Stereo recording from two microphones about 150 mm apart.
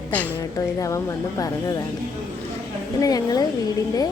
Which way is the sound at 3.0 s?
25° left (ahead or behind).